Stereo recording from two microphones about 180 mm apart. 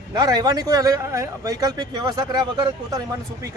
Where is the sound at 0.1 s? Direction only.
20° right (ahead or behind).